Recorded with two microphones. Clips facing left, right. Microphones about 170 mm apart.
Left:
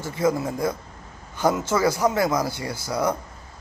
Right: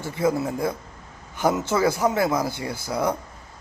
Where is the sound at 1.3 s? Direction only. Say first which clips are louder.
Even; 20° right (ahead or behind).